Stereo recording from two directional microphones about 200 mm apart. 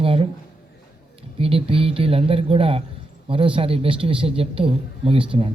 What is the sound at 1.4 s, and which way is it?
Speech, 30° right (ahead or behind).